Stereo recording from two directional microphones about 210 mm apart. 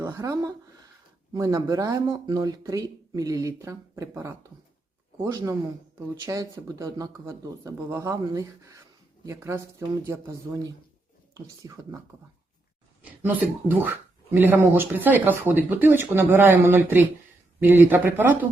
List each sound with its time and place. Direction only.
0.0 s speech: 15° right (ahead or behind)
13.0 s speech: 10° right (ahead or behind)